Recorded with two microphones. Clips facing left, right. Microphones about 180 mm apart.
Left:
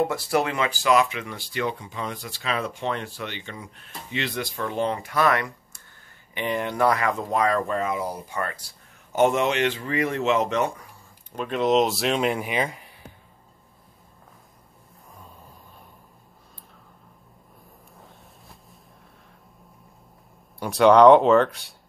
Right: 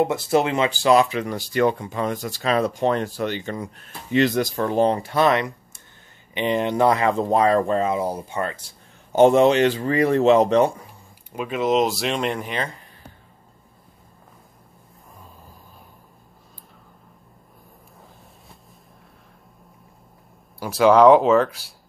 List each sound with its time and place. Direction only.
0.0 s speech: 20° right (ahead or behind)
11.3 s speech: 5° right (ahead or behind)
20.5 s speech: centre (ahead or behind)